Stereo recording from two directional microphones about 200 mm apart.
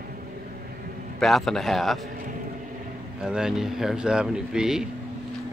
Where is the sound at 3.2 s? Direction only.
5° right (ahead or behind).